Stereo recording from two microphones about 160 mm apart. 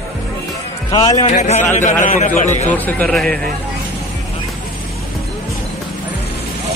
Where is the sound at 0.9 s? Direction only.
25° left (ahead or behind).